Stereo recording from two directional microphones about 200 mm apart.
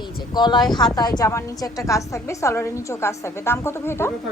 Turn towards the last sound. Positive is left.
turn(degrees=10)  # may be behind; listen again after turning